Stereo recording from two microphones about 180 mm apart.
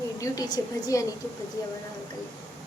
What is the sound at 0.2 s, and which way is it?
Speech, 20° left (ahead or behind).